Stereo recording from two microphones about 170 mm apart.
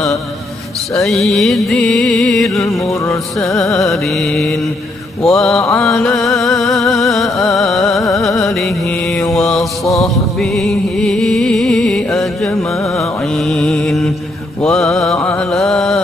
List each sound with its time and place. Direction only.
0.9 s music: centre (ahead or behind)
2.8 s music: 20° left (ahead or behind)
3.7 s music: centre (ahead or behind)
9.3 s mantra: centre (ahead or behind)
10.0 s music: centre (ahead or behind)
12.4 s music: 15° left (ahead or behind)
13.3 s music: 5° left (ahead or behind)